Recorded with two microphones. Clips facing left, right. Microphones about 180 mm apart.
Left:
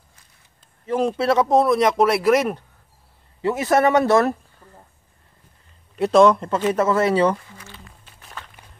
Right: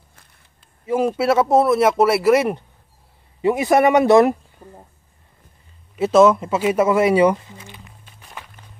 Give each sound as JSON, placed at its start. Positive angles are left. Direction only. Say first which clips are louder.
{"t": 0.8, "sound": "speech", "louder": "right 2 dB", "side_deg": -10}
{"t": 5.9, "sound": "speech", "louder": "right 1 dB", "side_deg": -5}